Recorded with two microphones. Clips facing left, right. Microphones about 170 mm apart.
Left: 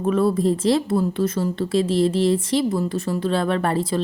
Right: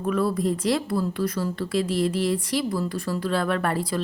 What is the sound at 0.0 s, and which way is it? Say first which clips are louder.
Speech: left 5 dB; 25° left (ahead or behind).